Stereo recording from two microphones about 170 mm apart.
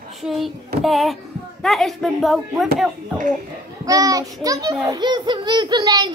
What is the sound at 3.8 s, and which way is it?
A child's voice, 20° right (ahead or behind).